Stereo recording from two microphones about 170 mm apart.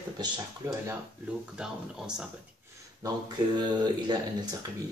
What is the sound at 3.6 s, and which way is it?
Speech, 25° right (ahead or behind).